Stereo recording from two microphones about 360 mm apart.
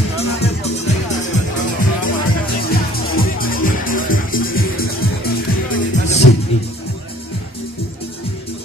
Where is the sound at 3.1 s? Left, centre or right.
Left.